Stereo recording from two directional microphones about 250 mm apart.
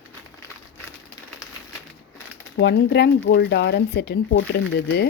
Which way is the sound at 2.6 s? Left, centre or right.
Left.